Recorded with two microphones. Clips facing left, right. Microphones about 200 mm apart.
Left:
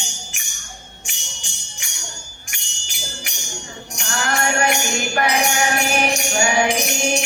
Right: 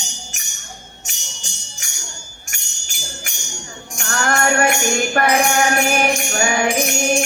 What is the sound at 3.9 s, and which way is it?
Music, 50° right (ahead or behind).